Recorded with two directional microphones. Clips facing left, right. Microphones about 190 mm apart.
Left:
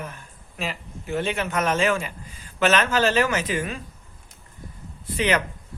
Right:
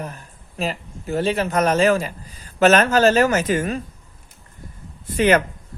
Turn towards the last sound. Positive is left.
turn(degrees=-50)  # may be behind; listen again after turning